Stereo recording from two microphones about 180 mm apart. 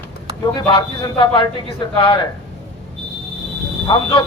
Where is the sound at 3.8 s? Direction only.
25° left (ahead or behind).